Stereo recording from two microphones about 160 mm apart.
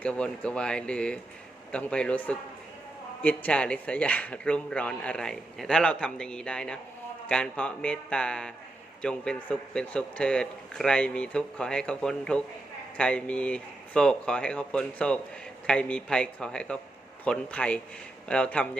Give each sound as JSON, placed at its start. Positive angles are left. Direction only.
{"t": 0.0, "sound": "speech", "side_deg": 5}